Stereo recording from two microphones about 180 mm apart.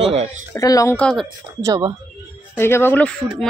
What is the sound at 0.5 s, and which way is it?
Speech, 15° left (ahead or behind).